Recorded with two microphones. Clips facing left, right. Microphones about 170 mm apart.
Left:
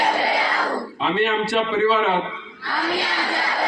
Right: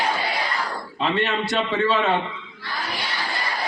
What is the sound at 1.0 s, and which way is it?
A man's voice, 5° left (ahead or behind).